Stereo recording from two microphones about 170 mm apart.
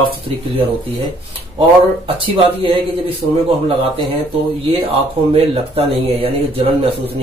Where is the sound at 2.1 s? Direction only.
35° right (ahead or behind).